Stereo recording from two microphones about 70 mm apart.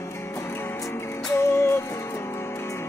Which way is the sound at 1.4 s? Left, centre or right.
Left.